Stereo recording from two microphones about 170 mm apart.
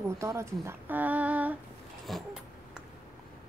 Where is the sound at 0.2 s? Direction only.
15° right (ahead or behind).